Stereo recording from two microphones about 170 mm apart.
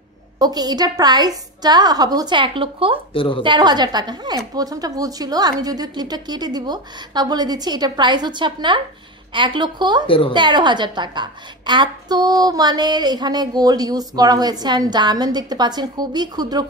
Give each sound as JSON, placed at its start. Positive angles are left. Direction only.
{"t": 0.4, "sound": "a woman's voice", "side_deg": -25}
{"t": 3.1, "sound": "a woman's voice", "side_deg": 30}
{"t": 3.4, "sound": "a woman's voice", "side_deg": -25}
{"t": 10.0, "sound": "a woman's voice", "side_deg": 30}
{"t": 10.3, "sound": "a woman's voice", "side_deg": -25}